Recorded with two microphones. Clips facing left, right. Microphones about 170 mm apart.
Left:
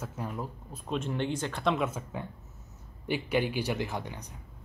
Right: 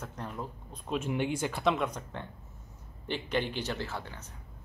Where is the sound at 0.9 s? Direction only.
10° right (ahead or behind).